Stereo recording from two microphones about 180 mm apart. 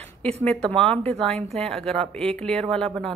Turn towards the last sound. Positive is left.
turn(degrees=5)  # may be behind; listen again after turning